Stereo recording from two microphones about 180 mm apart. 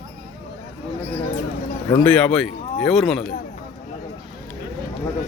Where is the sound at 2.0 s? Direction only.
5° left (ahead or behind).